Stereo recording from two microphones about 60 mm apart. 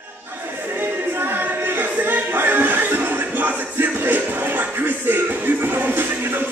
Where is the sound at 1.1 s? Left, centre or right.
Right.